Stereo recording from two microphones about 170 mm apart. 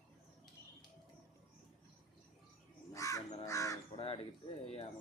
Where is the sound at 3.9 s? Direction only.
35° left (ahead or behind).